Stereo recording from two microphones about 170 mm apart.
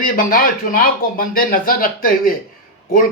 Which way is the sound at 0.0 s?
55° left (ahead or behind).